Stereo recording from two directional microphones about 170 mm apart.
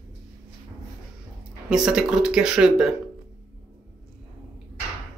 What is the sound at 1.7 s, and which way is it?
Speech, 5° right (ahead or behind).